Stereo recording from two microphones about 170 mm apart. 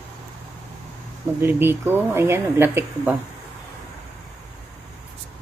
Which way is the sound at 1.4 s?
15° right (ahead or behind).